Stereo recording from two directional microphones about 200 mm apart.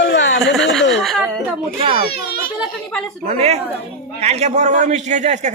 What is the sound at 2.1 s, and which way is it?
Children playing, 55° left (ahead or behind).